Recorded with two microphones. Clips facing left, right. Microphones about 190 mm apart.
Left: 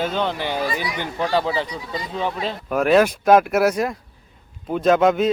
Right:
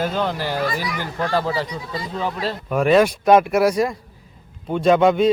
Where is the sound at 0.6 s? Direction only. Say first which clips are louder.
Right 1 dB; 15° left (ahead or behind).